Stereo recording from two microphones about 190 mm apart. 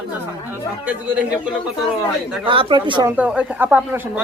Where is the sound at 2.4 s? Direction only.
25° right (ahead or behind).